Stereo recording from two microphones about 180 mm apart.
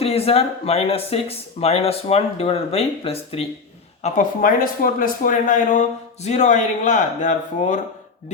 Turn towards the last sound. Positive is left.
turn(degrees=45)  # may be behind; listen again after turning